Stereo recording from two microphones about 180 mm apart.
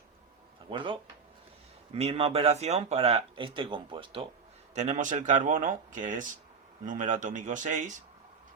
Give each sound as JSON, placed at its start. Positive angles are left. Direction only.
{"t": 0.7, "sound": "speech", "side_deg": -25}
{"t": 4.7, "sound": "speech", "side_deg": -40}